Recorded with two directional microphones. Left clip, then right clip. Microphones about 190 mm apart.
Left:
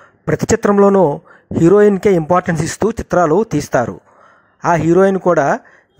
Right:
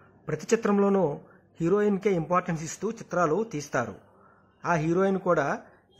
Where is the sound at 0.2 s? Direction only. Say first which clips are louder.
Left 11 dB; 45° left (ahead or behind).